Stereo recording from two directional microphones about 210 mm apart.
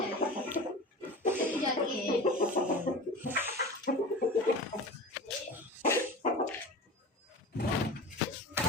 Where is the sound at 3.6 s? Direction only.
45° left (ahead or behind).